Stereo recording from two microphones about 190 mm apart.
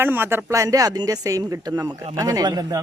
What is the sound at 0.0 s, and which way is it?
A man's voice, 10° right (ahead or behind).